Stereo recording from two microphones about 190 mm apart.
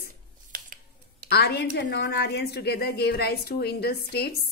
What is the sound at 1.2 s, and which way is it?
A woman's voice, 60° left (ahead or behind).